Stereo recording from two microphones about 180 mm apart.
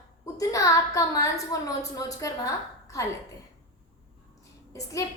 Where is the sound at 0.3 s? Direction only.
15° left (ahead or behind).